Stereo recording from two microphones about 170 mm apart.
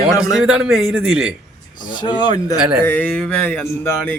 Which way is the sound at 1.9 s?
25° left (ahead or behind).